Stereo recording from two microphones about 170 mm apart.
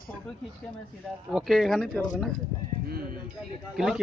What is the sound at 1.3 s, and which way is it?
Speech, centre (ahead or behind).